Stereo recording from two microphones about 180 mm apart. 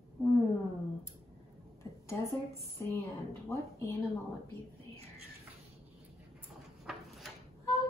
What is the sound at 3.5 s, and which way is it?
Speech, 15° left (ahead or behind).